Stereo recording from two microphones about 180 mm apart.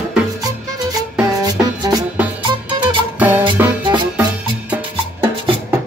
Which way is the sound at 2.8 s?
10° right (ahead or behind).